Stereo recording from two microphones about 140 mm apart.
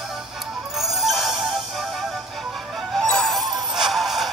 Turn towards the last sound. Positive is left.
turn(degrees=0)  # may be behind; listen again after turning